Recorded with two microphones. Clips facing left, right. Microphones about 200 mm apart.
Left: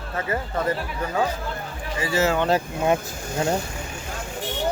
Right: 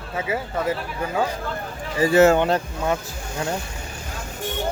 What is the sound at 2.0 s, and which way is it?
Speech, 50° right (ahead or behind).